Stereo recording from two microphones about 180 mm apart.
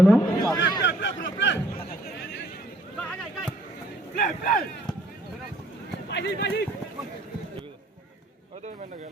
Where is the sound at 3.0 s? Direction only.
5° left (ahead or behind).